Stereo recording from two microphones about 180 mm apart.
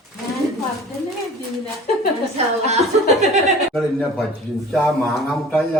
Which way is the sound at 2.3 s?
35° right (ahead or behind).